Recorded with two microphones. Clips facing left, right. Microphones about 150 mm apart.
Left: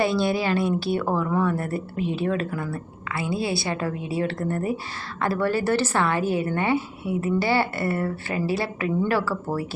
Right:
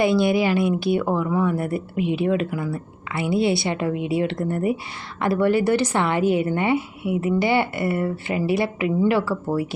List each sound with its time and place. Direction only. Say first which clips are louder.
0.0 s speech: right 4 dB; 15° right (ahead or behind)